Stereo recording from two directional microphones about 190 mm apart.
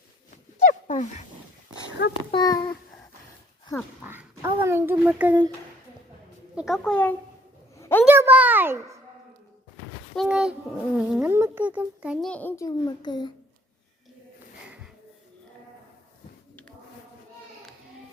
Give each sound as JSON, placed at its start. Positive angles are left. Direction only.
{"t": 0.7, "sound": "dog", "side_deg": 40}
{"t": 2.0, "sound": "a child's voice", "side_deg": 60}
{"t": 2.3, "sound": "a child's voice", "side_deg": 20}
{"t": 4.0, "sound": "speech", "side_deg": -10}
{"t": 6.6, "sound": "a child's voice", "side_deg": 0}
{"t": 7.8, "sound": "a sound", "side_deg": 10}
{"t": 8.0, "sound": "speech", "side_deg": -10}
{"t": 10.2, "sound": "a child's voice", "side_deg": -5}
{"t": 12.3, "sound": "a child's voice", "side_deg": 10}